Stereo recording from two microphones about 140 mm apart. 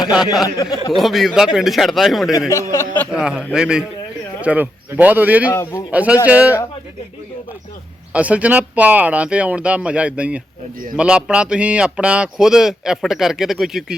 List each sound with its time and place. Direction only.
0.0 s speech: 5° right (ahead or behind)
0.4 s speech: 30° left (ahead or behind)
0.9 s speech: centre (ahead or behind)
2.5 s speech: 20° left (ahead or behind)
3.1 s speech: 5° right (ahead or behind)
5.5 s speech: 20° left (ahead or behind)
5.9 s speech: 10° right (ahead or behind)
8.1 s speech: 10° right (ahead or behind)